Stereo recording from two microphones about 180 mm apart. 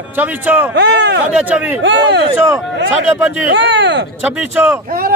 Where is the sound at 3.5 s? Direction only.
75° right (ahead or behind).